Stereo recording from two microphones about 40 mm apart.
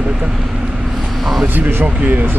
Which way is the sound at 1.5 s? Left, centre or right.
Right.